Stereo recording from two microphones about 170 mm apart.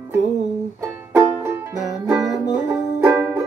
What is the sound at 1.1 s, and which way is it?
Music, 10° right (ahead or behind).